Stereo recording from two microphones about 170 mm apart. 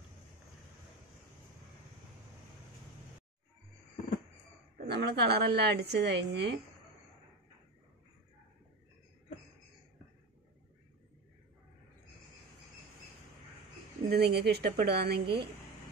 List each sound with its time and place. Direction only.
4.8 s a woman's voice: 75° right (ahead or behind)
14.0 s a woman's voice: 70° right (ahead or behind)